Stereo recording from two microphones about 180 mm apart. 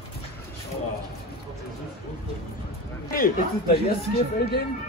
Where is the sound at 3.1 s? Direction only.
55° left (ahead or behind).